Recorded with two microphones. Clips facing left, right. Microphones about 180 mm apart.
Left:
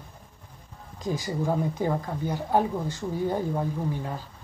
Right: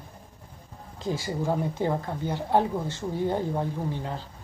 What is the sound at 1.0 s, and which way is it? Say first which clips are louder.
Speech: even; 15° left (ahead or behind).